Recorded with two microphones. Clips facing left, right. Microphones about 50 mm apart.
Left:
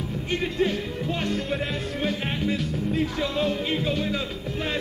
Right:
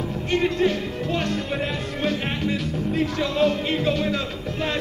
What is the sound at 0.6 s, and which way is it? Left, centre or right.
Music, centre.